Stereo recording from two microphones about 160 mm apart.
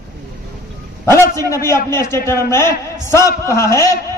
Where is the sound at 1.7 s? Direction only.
15° left (ahead or behind).